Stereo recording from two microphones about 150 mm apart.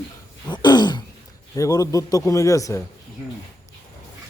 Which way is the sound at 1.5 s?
25° left (ahead or behind).